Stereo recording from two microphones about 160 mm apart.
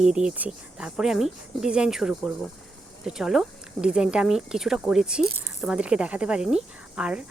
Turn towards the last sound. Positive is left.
turn(degrees=-5)  # may be behind; listen again after turning